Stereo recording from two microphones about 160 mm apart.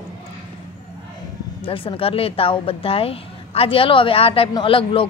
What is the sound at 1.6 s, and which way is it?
Speech, 35° left (ahead or behind).